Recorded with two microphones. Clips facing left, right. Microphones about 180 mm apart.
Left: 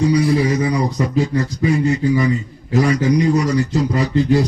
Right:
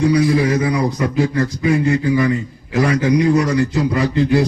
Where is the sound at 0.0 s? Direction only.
55° right (ahead or behind).